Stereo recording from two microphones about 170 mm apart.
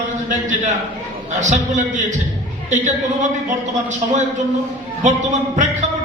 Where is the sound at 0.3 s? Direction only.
45° right (ahead or behind).